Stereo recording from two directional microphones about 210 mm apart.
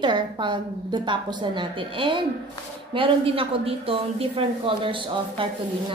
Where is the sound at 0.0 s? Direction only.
20° right (ahead or behind).